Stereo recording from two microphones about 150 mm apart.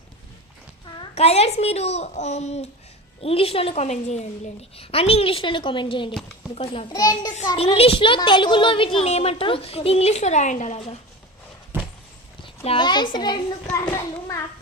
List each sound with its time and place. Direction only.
0.9 s a child's voice: 40° left (ahead or behind)
6.9 s a child's voice: 25° left (ahead or behind)
7.5 s a woman's voice: 40° left (ahead or behind); by 10.8 s 55° left (ahead or behind)
11.7 s a sound: 15° right (ahead or behind)
12.4 s a child's voice: 35° left (ahead or behind)